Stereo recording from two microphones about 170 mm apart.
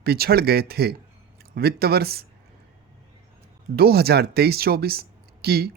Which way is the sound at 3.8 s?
65° right (ahead or behind).